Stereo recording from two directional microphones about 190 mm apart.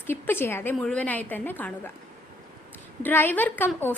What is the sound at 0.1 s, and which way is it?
A woman's voice, 10° left (ahead or behind).